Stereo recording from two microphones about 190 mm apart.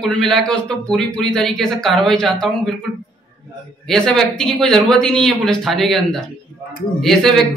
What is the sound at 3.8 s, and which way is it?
A man's voice, 5° left (ahead or behind).